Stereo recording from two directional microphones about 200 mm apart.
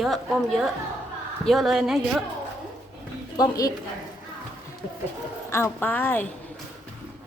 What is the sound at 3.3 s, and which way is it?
Speech, 20° left (ahead or behind).